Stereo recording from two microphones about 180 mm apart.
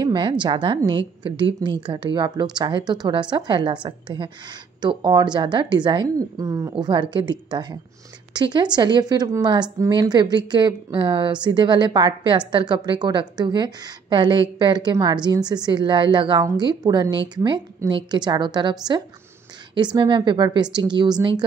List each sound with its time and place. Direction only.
0.0 s a woman's voice: 25° right (ahead or behind)